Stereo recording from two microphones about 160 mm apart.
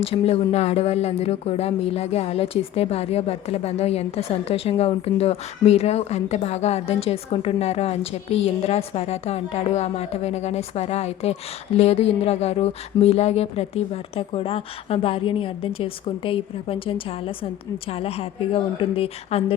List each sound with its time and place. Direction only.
0.0 s speech: 40° left (ahead or behind)